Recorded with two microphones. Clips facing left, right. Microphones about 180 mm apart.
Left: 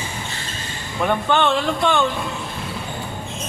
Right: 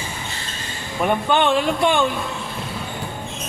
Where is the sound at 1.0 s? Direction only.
15° right (ahead or behind).